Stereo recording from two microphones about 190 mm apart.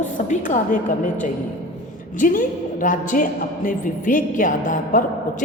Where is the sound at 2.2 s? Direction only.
45° left (ahead or behind).